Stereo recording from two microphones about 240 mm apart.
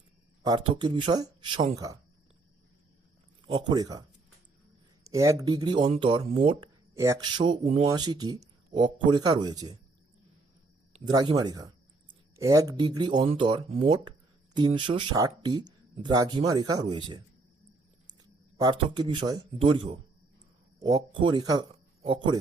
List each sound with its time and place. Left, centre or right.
0.4 s speech: centre
3.4 s speech: centre
5.0 s speech: centre
10.9 s a man's voice: centre